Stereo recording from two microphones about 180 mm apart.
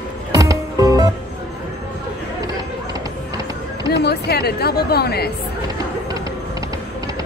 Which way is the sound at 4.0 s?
60° left (ahead or behind).